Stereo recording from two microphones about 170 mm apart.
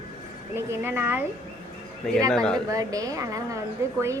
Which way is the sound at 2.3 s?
5° left (ahead or behind).